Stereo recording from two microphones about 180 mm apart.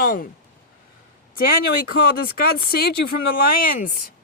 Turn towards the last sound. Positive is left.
turn(degrees=55)  # may be behind; listen again after turning